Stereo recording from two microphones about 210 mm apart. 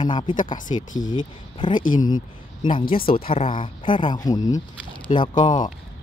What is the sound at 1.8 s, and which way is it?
Speech, 40° left (ahead or behind).